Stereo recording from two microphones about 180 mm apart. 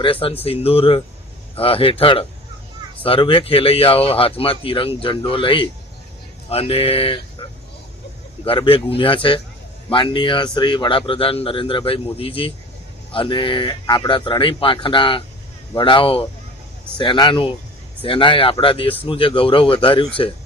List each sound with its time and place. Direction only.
0.0 s a man's voice: 30° left (ahead or behind)
8.4 s a man's voice: 30° left (ahead or behind)